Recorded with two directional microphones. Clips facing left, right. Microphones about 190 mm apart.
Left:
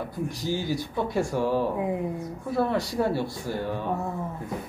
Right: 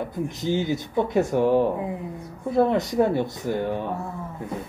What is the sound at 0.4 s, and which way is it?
Speech, 20° right (ahead or behind).